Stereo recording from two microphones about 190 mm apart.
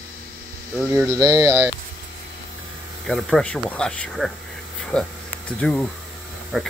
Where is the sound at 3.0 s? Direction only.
Centre (ahead or behind).